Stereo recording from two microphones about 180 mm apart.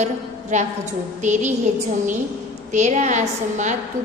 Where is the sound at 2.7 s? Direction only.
40° right (ahead or behind).